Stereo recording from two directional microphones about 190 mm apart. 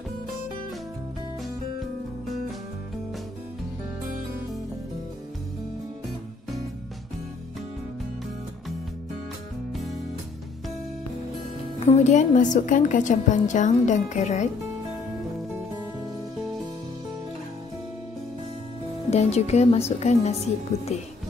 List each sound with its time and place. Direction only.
11.8 s a woman's voice: 35° left (ahead or behind)
19.0 s a woman's voice: 35° left (ahead or behind)